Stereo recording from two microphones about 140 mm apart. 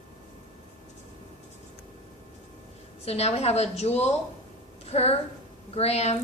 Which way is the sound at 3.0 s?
45° left (ahead or behind).